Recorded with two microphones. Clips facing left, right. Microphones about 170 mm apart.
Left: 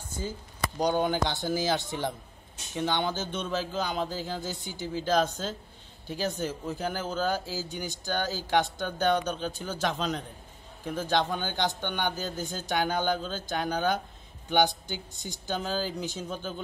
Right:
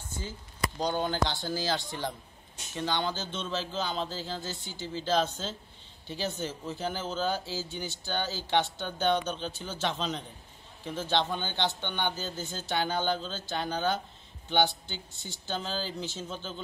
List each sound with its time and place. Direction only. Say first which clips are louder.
0.7 s speech: left 4 dB; 15° left (ahead or behind)